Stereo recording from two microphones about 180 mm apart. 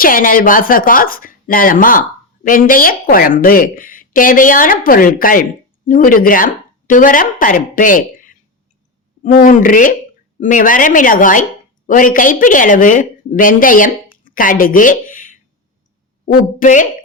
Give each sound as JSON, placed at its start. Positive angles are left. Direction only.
{"t": 0.0, "sound": "a woman's voice", "side_deg": 50}
{"t": 16.6, "sound": "speech", "side_deg": 45}